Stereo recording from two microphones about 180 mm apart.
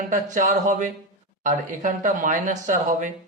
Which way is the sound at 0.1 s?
45° right (ahead or behind).